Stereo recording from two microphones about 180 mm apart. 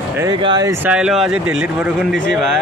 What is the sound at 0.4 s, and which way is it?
Speech, 25° right (ahead or behind).